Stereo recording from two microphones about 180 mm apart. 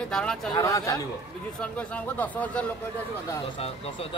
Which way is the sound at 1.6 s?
5° left (ahead or behind).